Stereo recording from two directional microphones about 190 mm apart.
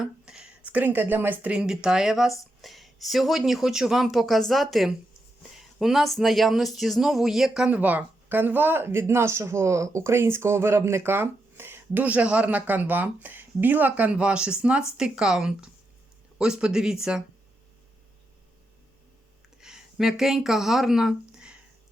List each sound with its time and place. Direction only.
0.0 s speech: 5° right (ahead or behind)
19.6 s speech: 5° right (ahead or behind)